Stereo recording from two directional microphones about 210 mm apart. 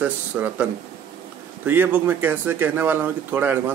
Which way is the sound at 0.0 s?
5° right (ahead or behind).